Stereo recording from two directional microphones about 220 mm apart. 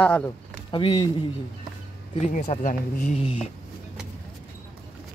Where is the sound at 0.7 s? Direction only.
20° left (ahead or behind).